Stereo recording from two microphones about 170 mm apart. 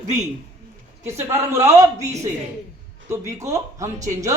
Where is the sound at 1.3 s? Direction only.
15° right (ahead or behind).